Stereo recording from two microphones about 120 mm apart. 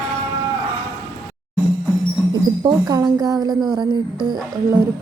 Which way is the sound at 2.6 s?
35° right (ahead or behind).